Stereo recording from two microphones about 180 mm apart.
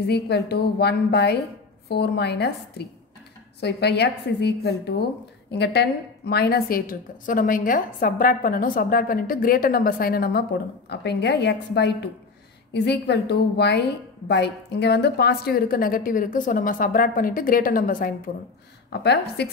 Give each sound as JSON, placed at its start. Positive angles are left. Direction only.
{"t": 0.0, "sound": "a woman's voice", "side_deg": 65}
{"t": 18.9, "sound": "a woman's voice", "side_deg": 70}